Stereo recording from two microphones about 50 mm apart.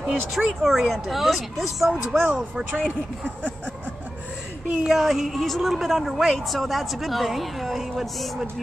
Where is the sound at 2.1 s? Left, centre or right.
Right.